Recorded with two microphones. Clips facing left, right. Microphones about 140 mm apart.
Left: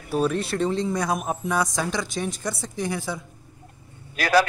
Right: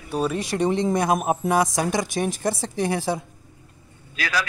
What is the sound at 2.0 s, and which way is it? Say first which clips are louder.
A woman's voice: right 4 dB; 60° right (ahead or behind).